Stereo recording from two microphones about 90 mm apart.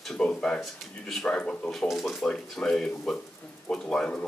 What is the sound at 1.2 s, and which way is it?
Speech, 15° left (ahead or behind).